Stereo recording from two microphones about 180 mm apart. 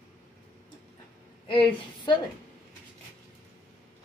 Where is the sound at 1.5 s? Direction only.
25° left (ahead or behind).